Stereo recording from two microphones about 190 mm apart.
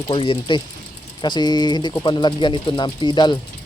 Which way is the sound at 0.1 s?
25° left (ahead or behind).